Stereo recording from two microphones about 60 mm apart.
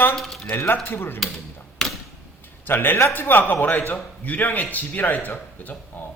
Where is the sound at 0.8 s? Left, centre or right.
Left.